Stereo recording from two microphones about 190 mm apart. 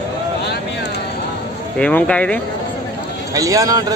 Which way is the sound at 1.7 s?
5° left (ahead or behind).